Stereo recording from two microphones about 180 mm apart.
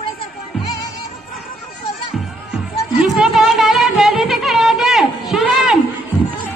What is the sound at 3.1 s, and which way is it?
Music, centre (ahead or behind).